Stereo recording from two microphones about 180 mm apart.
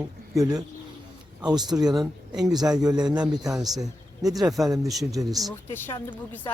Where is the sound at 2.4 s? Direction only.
20° right (ahead or behind).